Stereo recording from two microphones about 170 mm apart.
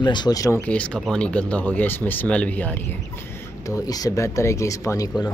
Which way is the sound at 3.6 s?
20° left (ahead or behind).